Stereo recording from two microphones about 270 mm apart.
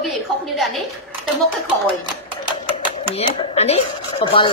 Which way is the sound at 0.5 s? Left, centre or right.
Centre.